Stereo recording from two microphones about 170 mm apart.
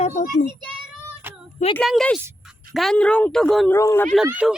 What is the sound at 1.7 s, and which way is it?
Speech, centre (ahead or behind).